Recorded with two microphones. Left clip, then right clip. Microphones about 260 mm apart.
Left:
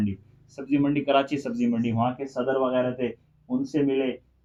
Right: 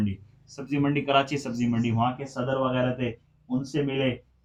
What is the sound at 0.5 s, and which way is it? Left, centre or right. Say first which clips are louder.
Speech: left 2 dB; centre.